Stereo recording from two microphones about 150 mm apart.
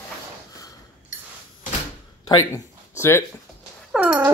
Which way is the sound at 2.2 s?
25° left (ahead or behind).